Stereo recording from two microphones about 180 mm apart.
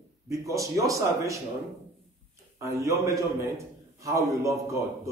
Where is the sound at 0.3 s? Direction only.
15° right (ahead or behind).